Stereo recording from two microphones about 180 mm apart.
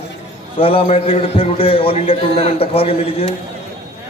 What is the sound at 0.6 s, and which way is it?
A man's voice, 30° left (ahead or behind).